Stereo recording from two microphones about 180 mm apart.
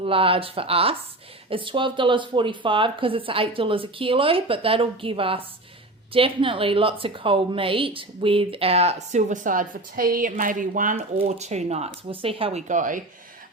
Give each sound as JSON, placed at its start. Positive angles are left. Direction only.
{"t": 0.0, "sound": "a woman's voice", "side_deg": -30}
{"t": 10.9, "sound": "a woman's voice", "side_deg": -35}